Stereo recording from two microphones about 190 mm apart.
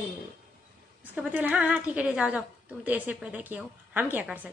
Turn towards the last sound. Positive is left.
turn(degrees=-10)  # may be behind; listen again after turning